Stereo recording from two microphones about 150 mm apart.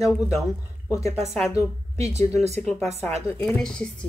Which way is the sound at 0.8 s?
20° left (ahead or behind).